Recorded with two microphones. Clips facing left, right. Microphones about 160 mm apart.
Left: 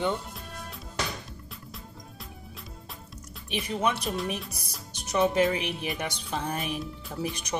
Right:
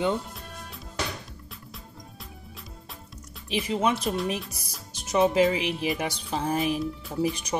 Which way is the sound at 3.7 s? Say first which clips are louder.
Right 2 dB; 30° right (ahead or behind).